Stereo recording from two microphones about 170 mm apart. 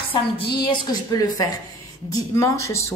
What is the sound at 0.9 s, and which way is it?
A woman's voice, 25° left (ahead or behind).